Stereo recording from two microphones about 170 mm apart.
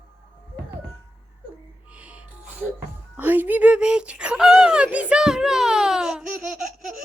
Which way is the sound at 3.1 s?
10° right (ahead or behind).